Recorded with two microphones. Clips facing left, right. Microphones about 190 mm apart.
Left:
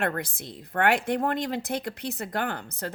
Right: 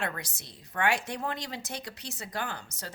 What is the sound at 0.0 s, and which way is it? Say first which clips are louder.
Speech: left 7 dB; 55° left (ahead or behind).